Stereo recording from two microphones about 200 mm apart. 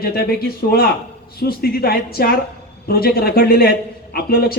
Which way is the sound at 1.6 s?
50° left (ahead or behind).